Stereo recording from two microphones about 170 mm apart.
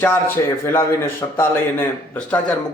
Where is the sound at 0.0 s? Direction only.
10° left (ahead or behind).